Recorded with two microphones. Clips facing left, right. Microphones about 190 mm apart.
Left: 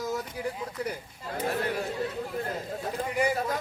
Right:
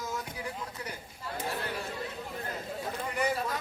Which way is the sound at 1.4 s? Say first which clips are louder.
Left 7 dB; 60° left (ahead or behind).